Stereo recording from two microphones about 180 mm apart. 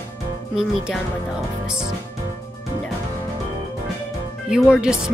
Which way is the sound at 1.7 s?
5° right (ahead or behind).